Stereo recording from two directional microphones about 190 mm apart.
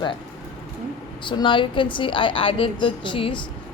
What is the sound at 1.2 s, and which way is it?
Speech, 25° left (ahead or behind).